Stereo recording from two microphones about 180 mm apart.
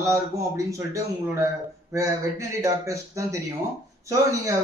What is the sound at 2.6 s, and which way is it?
Speech, 15° right (ahead or behind).